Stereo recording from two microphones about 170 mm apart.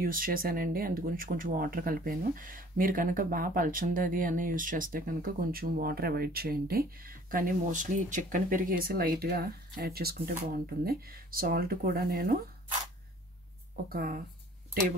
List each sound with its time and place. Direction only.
0.0 s speech: 55° right (ahead or behind)
13.8 s speech: 60° right (ahead or behind)